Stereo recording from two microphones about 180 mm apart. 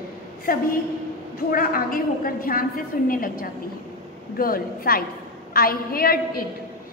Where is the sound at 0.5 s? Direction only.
55° left (ahead or behind).